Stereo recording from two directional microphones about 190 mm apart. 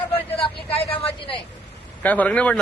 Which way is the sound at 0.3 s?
30° left (ahead or behind).